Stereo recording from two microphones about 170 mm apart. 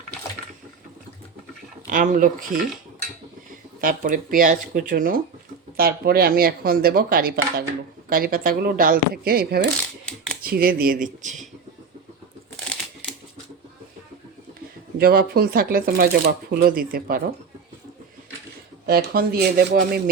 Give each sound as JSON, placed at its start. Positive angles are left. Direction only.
{"t": 1.9, "sound": "speech", "side_deg": -50}
{"t": 3.8, "sound": "speech", "side_deg": -55}
{"t": 12.6, "sound": "crumpling", "side_deg": 5}
{"t": 14.9, "sound": "speech", "side_deg": -65}
{"t": 18.9, "sound": "speech", "side_deg": -65}